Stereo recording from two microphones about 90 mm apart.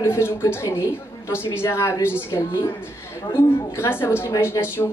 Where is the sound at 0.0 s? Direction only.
25° left (ahead or behind).